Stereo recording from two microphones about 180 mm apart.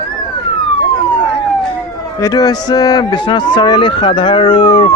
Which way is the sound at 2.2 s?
20° left (ahead or behind).